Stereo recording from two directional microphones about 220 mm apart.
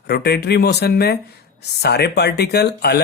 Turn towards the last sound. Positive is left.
turn(degrees=45)  # may be behind; listen again after turning